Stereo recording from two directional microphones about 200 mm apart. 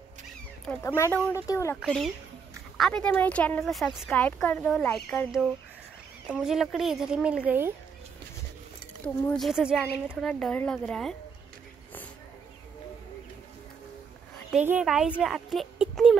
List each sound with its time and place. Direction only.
0.7 s speech: 15° left (ahead or behind)
1.8 s speech: 5° left (ahead or behind)
9.2 s speech: 5° left (ahead or behind)
14.5 s speech: 5° right (ahead or behind)